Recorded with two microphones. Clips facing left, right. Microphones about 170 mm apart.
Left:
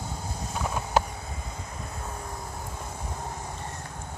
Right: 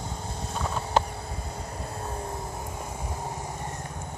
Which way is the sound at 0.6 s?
5° left (ahead or behind).